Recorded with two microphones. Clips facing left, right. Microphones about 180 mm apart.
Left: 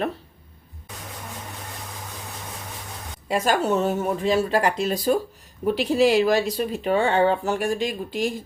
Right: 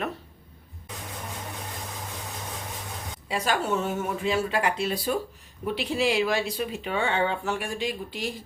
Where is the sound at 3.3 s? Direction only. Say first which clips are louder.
Left 5 dB; 45° left (ahead or behind).